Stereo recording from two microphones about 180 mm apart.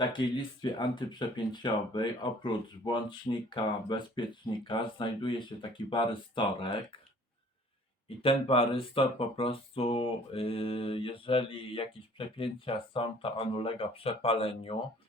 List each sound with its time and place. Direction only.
0.0 s speech: 25° left (ahead or behind)
8.2 s speech: 30° left (ahead or behind)